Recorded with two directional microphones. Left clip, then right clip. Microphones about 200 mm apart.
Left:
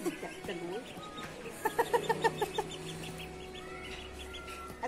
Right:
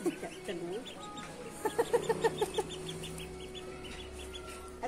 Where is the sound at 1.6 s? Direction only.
50° right (ahead or behind).